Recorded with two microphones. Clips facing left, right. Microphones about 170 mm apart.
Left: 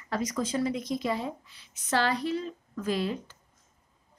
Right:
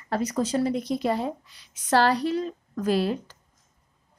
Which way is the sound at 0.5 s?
40° right (ahead or behind).